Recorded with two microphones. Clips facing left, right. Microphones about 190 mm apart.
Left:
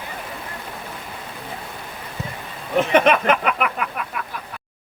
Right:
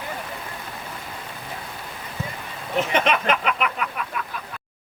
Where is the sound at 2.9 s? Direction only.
55° left (ahead or behind).